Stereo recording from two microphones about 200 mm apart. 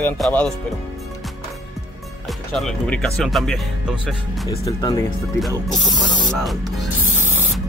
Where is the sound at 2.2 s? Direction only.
Centre (ahead or behind).